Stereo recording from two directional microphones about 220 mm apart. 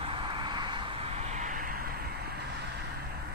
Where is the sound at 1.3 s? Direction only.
35° right (ahead or behind).